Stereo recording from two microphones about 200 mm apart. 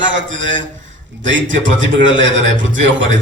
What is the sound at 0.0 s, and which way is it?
A man's voice, 70° right (ahead or behind).